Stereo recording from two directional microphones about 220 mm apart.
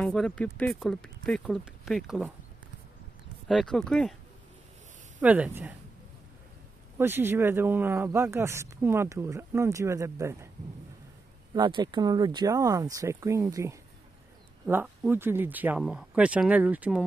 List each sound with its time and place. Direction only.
0.0 s speech: centre (ahead or behind)
3.4 s speech: centre (ahead or behind)
5.2 s speech: 5° right (ahead or behind)
7.0 s speech: 10° right (ahead or behind)
11.5 s speech: 20° right (ahead or behind)